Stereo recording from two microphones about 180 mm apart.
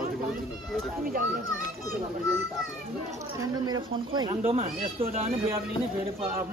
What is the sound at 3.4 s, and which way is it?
Speech, 20° right (ahead or behind).